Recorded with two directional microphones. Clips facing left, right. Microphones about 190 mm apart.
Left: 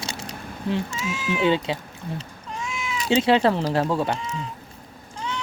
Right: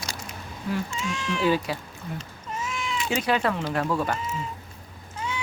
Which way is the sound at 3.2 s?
25° left (ahead or behind).